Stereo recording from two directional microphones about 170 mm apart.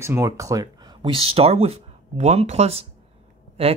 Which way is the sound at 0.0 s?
15° right (ahead or behind).